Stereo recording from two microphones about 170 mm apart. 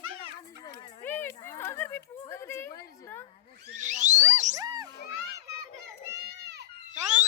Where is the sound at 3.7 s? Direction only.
45° right (ahead or behind).